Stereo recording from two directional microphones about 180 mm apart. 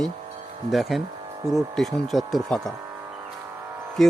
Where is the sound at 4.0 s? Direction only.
Centre (ahead or behind).